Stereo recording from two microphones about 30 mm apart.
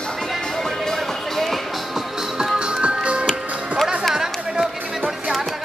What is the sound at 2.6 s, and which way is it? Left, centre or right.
Music, right.